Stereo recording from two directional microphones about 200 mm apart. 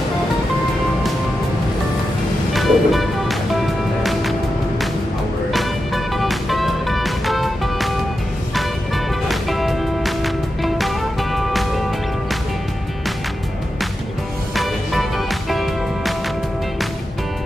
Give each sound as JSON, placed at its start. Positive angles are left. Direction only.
{"t": 2.5, "sound": "music", "side_deg": 0}
{"t": 5.5, "sound": "music", "side_deg": 0}
{"t": 14.5, "sound": "music", "side_deg": 0}